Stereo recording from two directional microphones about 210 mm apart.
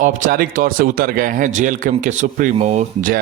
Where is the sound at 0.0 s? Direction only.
40° right (ahead or behind).